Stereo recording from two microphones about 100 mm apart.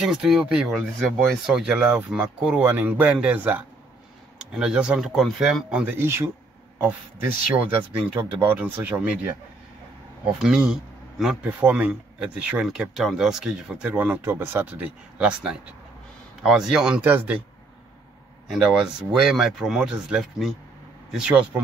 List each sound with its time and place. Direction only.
0.0 s speech: 5° right (ahead or behind)
2.1 s speech: 5° right (ahead or behind)
2.6 s speech: 20° right (ahead or behind); by 5.9 s 5° right (ahead or behind)
5.9 s a man's voice: 25° right (ahead or behind)
7.5 s speech: 15° right (ahead or behind)
10.4 s speech: 10° right (ahead or behind)
13.9 s speech: 15° right (ahead or behind)
16.4 s speech: 5° right (ahead or behind)
17.0 s speech: 15° right (ahead or behind)
18.5 s speech: 5° right (ahead or behind)